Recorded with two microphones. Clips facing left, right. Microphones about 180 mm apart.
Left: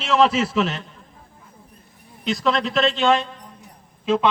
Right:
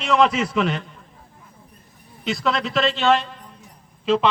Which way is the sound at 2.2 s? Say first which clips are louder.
Left 2 dB; centre (ahead or behind).